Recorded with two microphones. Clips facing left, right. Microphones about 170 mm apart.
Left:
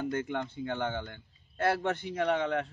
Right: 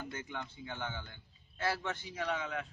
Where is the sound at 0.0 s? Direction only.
55° left (ahead or behind).